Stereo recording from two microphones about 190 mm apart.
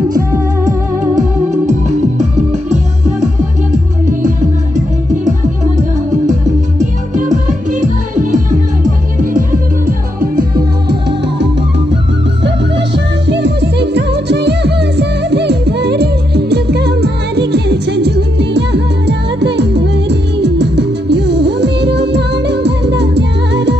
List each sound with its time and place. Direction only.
1.7 s music: 40° right (ahead or behind)
5.2 s music: 40° right (ahead or behind)
10.9 s music: 60° right (ahead or behind)
12.4 s music: 65° right (ahead or behind)